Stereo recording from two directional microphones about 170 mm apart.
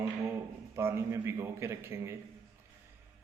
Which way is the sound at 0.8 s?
15° right (ahead or behind).